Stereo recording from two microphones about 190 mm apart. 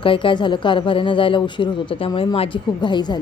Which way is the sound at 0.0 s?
25° left (ahead or behind).